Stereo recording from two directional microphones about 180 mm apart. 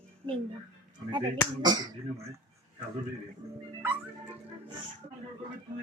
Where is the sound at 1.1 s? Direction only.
25° right (ahead or behind).